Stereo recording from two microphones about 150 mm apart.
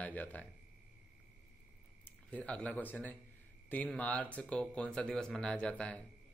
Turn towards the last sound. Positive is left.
turn(degrees=10)  # may be behind; listen again after turning